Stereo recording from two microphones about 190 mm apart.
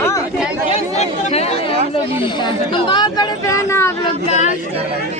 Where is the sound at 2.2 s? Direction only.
25° left (ahead or behind).